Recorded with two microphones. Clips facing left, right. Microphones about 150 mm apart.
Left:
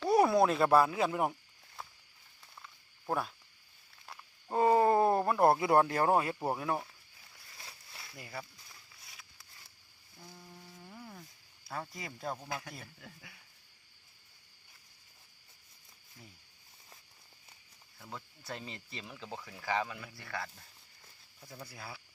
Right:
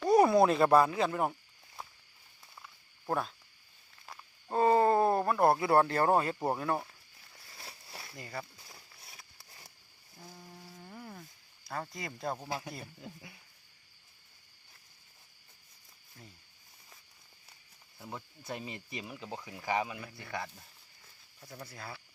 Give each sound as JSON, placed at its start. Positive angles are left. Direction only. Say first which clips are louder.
{"t": 0.0, "sound": "speech", "louder": "right 2 dB", "side_deg": 0}
{"t": 3.1, "sound": "speech", "louder": "right 1 dB", "side_deg": 5}
{"t": 4.0, "sound": "a sound", "louder": "right 1 dB", "side_deg": 0}
{"t": 4.5, "sound": "speech", "louder": "right 1 dB", "side_deg": 10}
{"t": 8.1, "sound": "speech", "louder": "right 2 dB", "side_deg": 5}
{"t": 10.2, "sound": "a sound", "louder": "right 2 dB", "side_deg": -10}
{"t": 11.7, "sound": "speech", "louder": "right 2 dB", "side_deg": 0}
{"t": 12.5, "sound": "speech", "louder": "right 3 dB", "side_deg": -30}
{"t": 18.0, "sound": "speech", "louder": "right 3 dB", "side_deg": -15}
{"t": 21.5, "sound": "speech", "louder": "right 2 dB", "side_deg": 10}